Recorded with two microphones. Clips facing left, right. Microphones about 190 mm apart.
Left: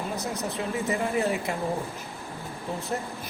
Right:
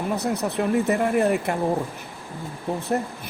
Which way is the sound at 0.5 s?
60° right (ahead or behind).